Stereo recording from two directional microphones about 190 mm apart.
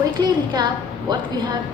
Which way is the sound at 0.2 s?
25° right (ahead or behind).